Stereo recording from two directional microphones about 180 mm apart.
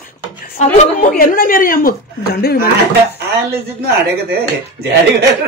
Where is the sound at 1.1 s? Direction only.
55° left (ahead or behind).